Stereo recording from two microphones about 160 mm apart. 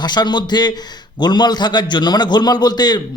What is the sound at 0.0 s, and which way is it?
A man's voice, 25° left (ahead or behind).